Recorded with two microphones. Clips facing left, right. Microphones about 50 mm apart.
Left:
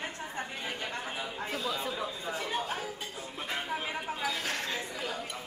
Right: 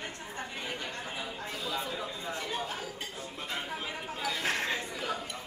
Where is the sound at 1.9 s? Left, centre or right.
Centre.